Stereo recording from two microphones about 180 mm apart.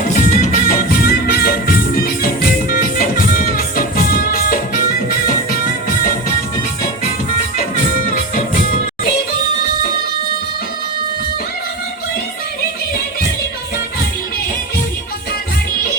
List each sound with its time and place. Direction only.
0.1 s music: 45° left (ahead or behind)